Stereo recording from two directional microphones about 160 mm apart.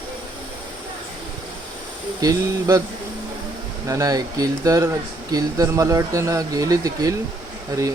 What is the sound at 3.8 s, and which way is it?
Speech, 20° right (ahead or behind).